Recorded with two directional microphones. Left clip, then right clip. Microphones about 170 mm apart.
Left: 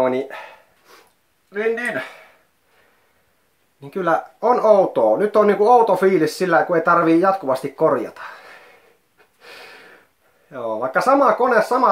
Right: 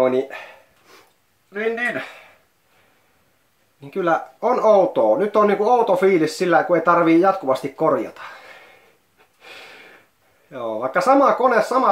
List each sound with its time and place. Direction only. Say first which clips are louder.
0.0 s speech: right 1 dB; 10° left (ahead or behind)
1.5 s speech: left 1 dB; 20° left (ahead or behind)
3.8 s speech: even; 20° left (ahead or behind)
10.5 s speech: left 1 dB; 15° left (ahead or behind)